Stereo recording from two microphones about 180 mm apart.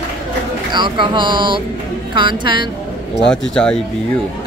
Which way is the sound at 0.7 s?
25° right (ahead or behind).